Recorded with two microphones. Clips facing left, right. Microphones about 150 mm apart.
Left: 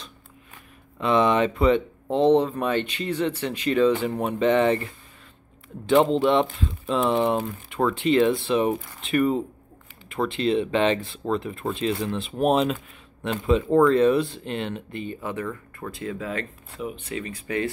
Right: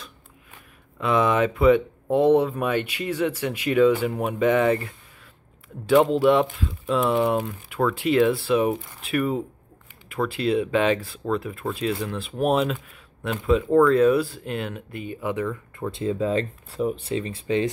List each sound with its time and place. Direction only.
0.9 s speech: 5° right (ahead or behind)
15.9 s speech: 25° right (ahead or behind)